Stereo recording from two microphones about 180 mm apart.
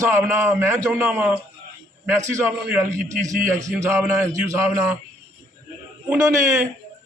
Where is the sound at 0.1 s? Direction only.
15° right (ahead or behind).